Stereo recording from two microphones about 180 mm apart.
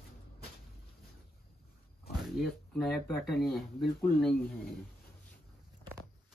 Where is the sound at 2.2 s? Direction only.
Centre (ahead or behind).